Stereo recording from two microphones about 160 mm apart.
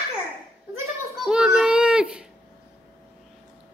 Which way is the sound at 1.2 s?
5° right (ahead or behind).